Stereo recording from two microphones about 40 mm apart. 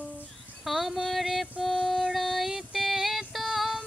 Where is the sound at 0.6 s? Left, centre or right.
Centre.